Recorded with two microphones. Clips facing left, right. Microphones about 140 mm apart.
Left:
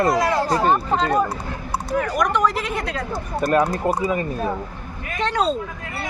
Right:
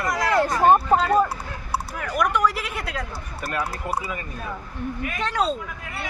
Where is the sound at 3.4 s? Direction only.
40° left (ahead or behind).